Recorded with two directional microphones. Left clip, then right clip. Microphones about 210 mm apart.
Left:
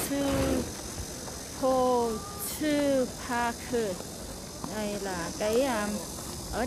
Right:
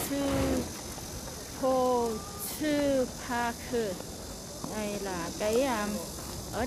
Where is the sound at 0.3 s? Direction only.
50° left (ahead or behind).